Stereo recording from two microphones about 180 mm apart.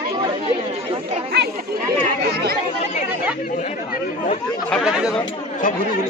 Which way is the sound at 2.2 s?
60° right (ahead or behind).